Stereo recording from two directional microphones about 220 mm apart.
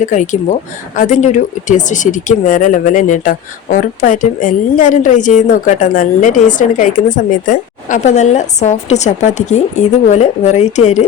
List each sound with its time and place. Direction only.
0.0 s speech: 35° left (ahead or behind)